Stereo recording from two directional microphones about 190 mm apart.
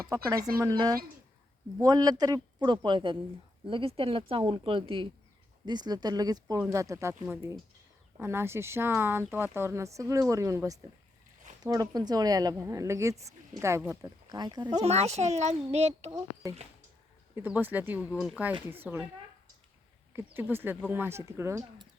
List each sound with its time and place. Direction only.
0.1 s speech: 20° right (ahead or behind)
14.8 s a child's voice: 35° right (ahead or behind)
16.1 s speech: 15° right (ahead or behind)
20.1 s speech: 10° right (ahead or behind)